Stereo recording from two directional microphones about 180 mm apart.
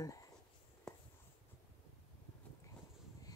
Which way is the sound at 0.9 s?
5° left (ahead or behind).